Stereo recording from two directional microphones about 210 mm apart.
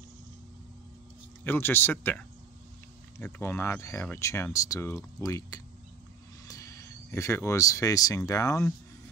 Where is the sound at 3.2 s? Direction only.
10° left (ahead or behind).